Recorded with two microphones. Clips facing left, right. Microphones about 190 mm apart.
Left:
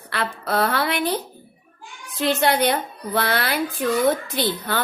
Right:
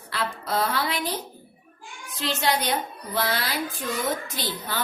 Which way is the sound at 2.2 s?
60° left (ahead or behind).